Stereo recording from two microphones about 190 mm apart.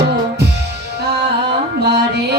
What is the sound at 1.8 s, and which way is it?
Music, 60° right (ahead or behind).